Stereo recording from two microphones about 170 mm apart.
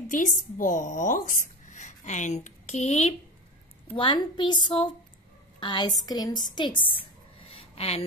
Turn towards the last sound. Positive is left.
turn(degrees=35)  # may be behind; listen again after turning